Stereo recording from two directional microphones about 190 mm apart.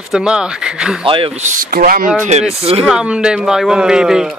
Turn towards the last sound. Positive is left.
turn(degrees=-5)  # may be behind; listen again after turning